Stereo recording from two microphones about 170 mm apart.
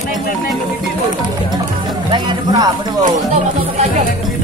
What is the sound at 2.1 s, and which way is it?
Music, 25° right (ahead or behind).